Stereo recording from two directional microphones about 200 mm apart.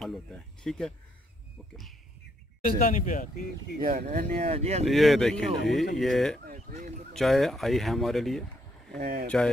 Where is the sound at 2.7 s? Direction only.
40° left (ahead or behind).